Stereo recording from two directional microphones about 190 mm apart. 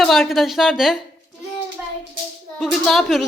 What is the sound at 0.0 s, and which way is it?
Speech, centre (ahead or behind).